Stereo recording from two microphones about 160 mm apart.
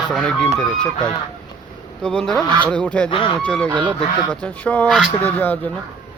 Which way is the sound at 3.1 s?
30° left (ahead or behind).